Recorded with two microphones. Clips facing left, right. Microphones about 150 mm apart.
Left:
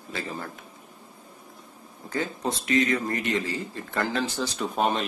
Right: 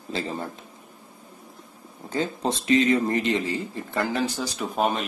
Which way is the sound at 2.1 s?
25° right (ahead or behind).